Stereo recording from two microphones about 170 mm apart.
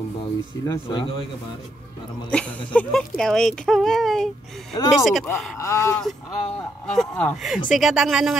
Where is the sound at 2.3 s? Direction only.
5° left (ahead or behind).